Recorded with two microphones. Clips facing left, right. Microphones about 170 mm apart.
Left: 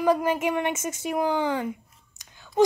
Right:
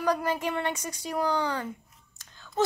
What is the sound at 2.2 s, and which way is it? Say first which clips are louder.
Whispering: left 1 dB; 15° left (ahead or behind).